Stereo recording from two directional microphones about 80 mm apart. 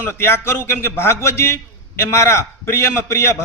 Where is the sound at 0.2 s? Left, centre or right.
Left.